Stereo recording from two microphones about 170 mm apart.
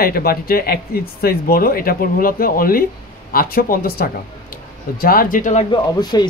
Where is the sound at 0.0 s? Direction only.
60° left (ahead or behind); by 5.7 s 45° left (ahead or behind).